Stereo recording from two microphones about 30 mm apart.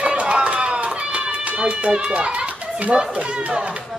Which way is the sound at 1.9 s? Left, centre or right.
Right.